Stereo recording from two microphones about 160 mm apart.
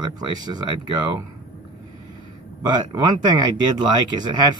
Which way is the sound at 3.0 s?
25° right (ahead or behind).